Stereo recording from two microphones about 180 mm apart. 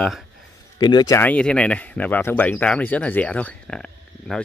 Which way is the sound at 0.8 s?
25° left (ahead or behind).